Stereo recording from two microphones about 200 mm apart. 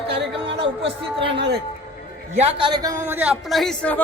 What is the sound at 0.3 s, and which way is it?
Speech, 25° right (ahead or behind).